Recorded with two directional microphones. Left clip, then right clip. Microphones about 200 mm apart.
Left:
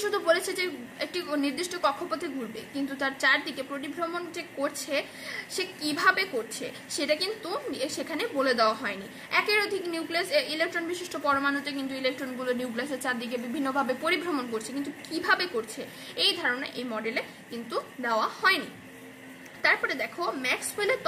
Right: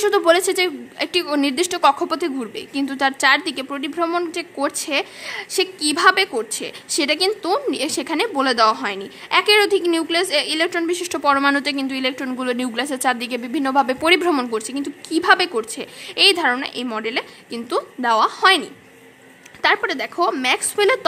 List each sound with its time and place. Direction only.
0.0 s a woman's voice: 55° right (ahead or behind)
19.6 s a woman's voice: 50° right (ahead or behind)